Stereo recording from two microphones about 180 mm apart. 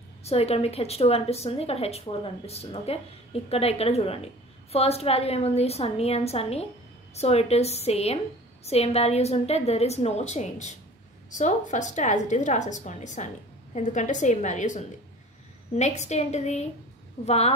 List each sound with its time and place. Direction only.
0.2 s a woman's voice: 35° left (ahead or behind)